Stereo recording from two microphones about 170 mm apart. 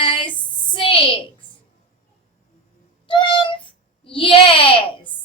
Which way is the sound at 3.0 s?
30° left (ahead or behind).